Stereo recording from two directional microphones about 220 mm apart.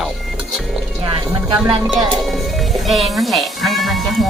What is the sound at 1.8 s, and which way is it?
Music, centre (ahead or behind).